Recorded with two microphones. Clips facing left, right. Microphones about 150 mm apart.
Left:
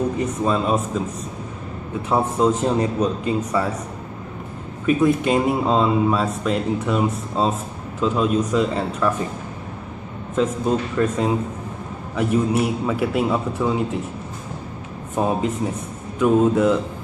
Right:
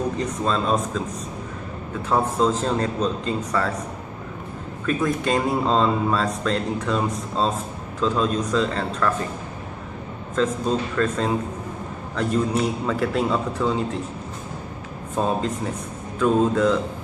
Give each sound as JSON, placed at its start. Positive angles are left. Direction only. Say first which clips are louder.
{"t": 0.2, "sound": "speech", "louder": "left 3 dB", "side_deg": 10}
{"t": 2.0, "sound": "speech", "louder": "left 2 dB", "side_deg": 10}
{"t": 4.9, "sound": "speech", "louder": "left 5 dB", "side_deg": 15}
{"t": 10.3, "sound": "speech", "louder": "left 2 dB", "side_deg": 15}
{"t": 15.1, "sound": "speech", "louder": "left 2 dB", "side_deg": 15}